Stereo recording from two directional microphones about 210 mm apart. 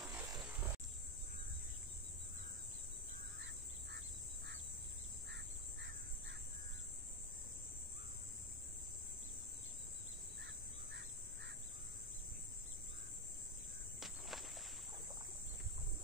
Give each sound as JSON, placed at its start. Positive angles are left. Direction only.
{"t": 0.0, "sound": "a sound", "side_deg": -5}
{"t": 5.3, "sound": "bird", "side_deg": -55}
{"t": 10.4, "sound": "bird", "side_deg": -55}
{"t": 13.9, "sound": "walk", "side_deg": 0}